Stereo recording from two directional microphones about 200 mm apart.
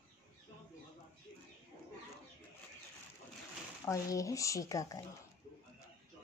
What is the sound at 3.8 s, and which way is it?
Speech, 15° left (ahead or behind).